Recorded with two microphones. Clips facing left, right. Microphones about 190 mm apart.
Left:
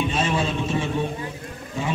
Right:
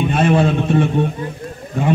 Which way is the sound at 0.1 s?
60° right (ahead or behind).